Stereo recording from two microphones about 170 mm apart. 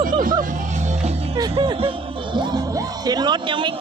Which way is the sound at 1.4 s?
30° right (ahead or behind).